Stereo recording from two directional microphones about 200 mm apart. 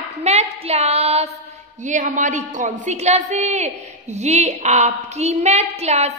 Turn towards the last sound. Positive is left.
turn(degrees=-30)  # may be behind; listen again after turning